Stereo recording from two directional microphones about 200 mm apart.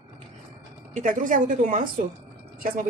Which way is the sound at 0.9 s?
40° right (ahead or behind).